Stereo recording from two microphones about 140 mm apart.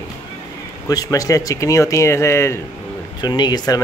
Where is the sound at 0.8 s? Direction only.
25° left (ahead or behind).